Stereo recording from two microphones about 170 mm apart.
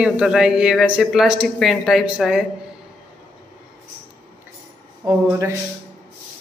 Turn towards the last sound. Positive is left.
turn(degrees=-20)  # may be behind; listen again after turning